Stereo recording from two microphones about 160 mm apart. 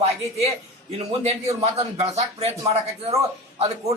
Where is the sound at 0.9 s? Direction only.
40° right (ahead or behind).